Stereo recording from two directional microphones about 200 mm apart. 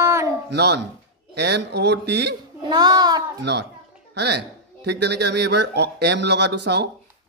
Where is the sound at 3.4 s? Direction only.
55° right (ahead or behind).